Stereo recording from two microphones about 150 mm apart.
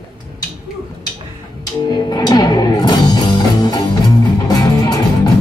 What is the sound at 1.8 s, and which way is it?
Music, 25° left (ahead or behind).